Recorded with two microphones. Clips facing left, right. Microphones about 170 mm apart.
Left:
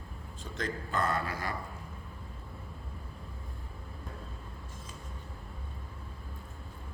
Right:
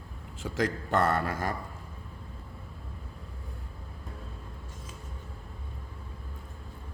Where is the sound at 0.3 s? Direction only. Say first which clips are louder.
Right 7 dB; 90° right; by 1.5 s 45° right (ahead or behind).